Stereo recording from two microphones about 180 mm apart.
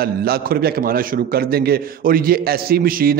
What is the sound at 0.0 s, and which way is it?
A man's voice, 55° right (ahead or behind).